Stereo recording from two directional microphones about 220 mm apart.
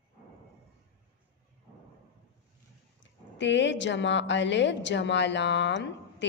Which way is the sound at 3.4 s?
55° left (ahead or behind).